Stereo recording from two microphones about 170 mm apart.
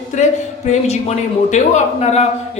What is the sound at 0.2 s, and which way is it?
A man's voice, 45° left (ahead or behind).